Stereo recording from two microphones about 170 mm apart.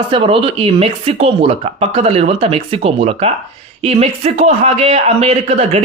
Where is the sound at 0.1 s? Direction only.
30° right (ahead or behind).